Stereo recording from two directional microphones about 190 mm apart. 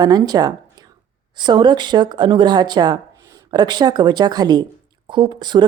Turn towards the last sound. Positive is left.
turn(degrees=-25)  # may be behind; listen again after turning